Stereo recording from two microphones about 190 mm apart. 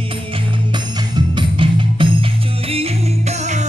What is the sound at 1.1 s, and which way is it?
Music, 25° right (ahead or behind).